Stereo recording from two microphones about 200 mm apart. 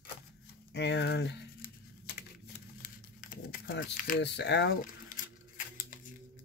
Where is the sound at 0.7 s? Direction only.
60° left (ahead or behind).